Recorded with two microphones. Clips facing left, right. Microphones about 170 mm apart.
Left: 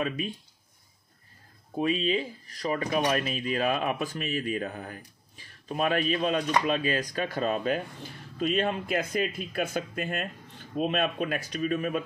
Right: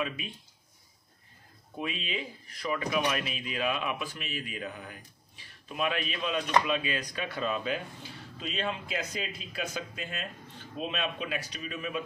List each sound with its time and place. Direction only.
1.8 s speech: 35° left (ahead or behind)